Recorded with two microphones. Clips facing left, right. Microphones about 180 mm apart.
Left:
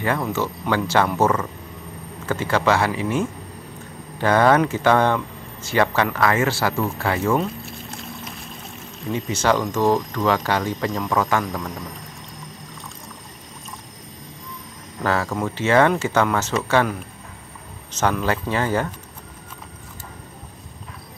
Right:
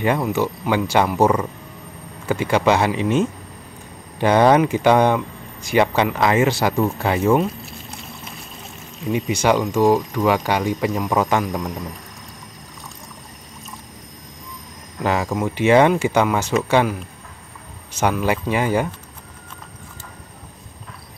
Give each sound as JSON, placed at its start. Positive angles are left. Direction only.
{"t": 0.0, "sound": "speech", "side_deg": -15}
{"t": 9.1, "sound": "speech", "side_deg": -15}
{"t": 15.0, "sound": "speech", "side_deg": -15}
{"t": 18.2, "sound": "speech", "side_deg": -15}